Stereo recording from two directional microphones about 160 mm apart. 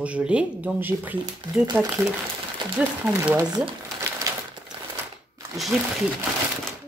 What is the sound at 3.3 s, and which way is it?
Speech, 25° right (ahead or behind).